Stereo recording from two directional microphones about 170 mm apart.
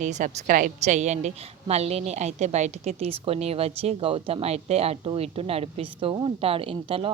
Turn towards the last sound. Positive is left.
turn(degrees=-35)  # may be behind; listen again after turning